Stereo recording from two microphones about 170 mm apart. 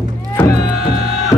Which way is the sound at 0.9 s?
40° right (ahead or behind).